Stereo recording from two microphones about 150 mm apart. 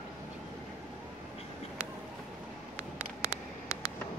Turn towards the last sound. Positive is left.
turn(degrees=-10)  # may be behind; listen again after turning